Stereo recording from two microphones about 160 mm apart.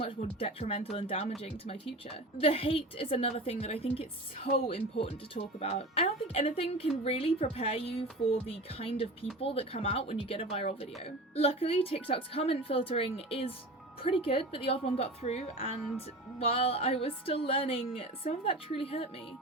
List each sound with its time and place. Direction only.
0.0 s speech: 35° left (ahead or behind)